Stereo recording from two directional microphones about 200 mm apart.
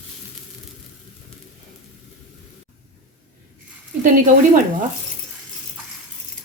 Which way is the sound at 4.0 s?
40° right (ahead or behind).